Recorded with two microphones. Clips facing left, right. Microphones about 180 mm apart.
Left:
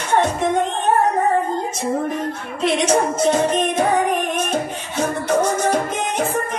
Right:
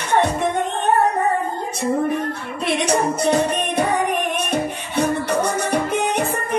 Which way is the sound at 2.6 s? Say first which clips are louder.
Left 2 dB; 60° right (ahead or behind).